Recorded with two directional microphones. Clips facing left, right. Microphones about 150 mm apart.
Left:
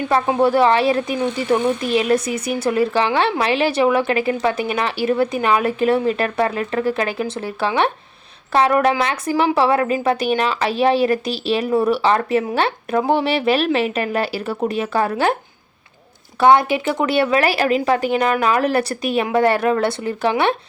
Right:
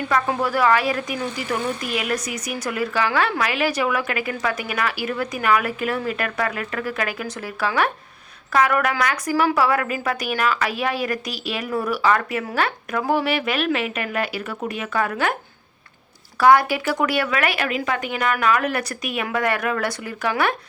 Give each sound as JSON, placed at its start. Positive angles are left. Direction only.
{"t": 0.1, "sound": "a woman's voice", "side_deg": 30}
{"t": 16.4, "sound": "a woman's voice", "side_deg": 25}